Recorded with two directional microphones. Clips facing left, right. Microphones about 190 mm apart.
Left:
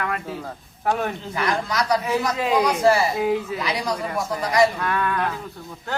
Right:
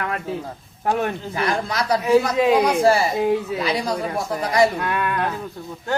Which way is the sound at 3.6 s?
25° right (ahead or behind).